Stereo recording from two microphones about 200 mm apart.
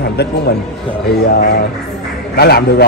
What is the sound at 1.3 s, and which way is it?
A man's voice, 55° left (ahead or behind).